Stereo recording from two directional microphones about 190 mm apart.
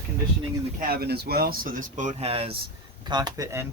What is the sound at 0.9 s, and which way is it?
Speech, 55° right (ahead or behind).